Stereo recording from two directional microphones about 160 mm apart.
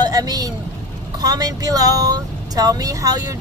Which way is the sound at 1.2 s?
25° right (ahead or behind).